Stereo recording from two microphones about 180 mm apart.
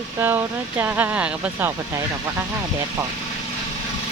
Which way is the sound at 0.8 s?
10° right (ahead or behind).